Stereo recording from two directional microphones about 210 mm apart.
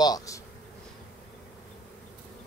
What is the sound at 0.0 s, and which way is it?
Speech, 15° left (ahead or behind).